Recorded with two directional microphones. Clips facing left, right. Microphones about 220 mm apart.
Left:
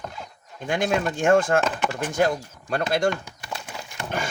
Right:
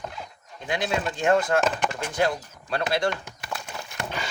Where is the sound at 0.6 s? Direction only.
50° left (ahead or behind).